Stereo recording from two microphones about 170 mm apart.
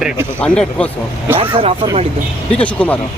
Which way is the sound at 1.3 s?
35° right (ahead or behind).